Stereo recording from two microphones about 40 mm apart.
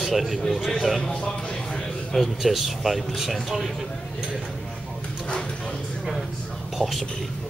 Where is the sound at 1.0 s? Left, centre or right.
Centre.